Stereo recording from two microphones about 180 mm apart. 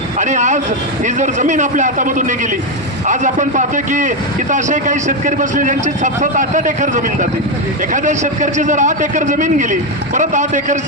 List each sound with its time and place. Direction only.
0.2 s a man's voice: 40° right (ahead or behind)